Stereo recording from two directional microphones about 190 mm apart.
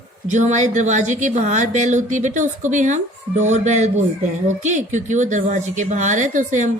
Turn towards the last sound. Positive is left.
turn(degrees=-40)  # may be behind; listen again after turning